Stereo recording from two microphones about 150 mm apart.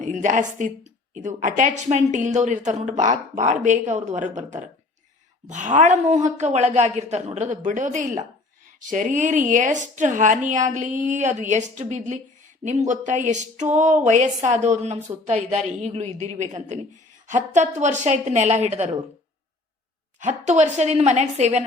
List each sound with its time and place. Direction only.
0.0 s a woman's voice: 55° right (ahead or behind)
20.1 s speech: 50° right (ahead or behind)